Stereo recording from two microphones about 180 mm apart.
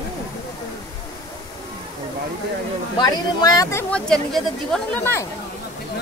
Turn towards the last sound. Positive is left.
turn(degrees=10)  # may be behind; listen again after turning